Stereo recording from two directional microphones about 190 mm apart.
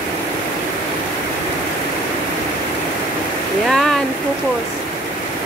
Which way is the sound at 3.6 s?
Centre (ahead or behind).